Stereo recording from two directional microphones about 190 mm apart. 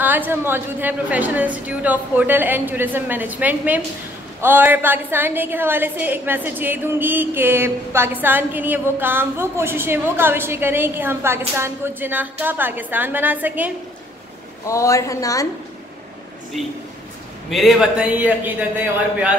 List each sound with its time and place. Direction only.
0.0 s a woman's voice: 10° right (ahead or behind)
14.7 s a man's voice: 15° left (ahead or behind)
16.5 s a man's voice: centre (ahead or behind)